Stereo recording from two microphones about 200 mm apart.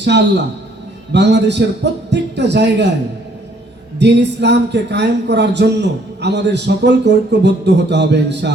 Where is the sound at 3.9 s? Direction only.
60° right (ahead or behind).